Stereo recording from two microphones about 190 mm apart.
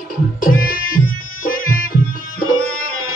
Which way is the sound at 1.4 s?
45° left (ahead or behind).